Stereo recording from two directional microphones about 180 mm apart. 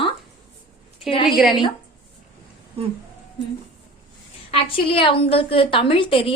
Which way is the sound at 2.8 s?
35° right (ahead or behind).